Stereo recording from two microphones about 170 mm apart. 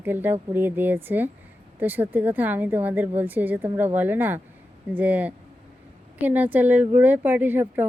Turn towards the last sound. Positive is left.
turn(degrees=-10)  # may be behind; listen again after turning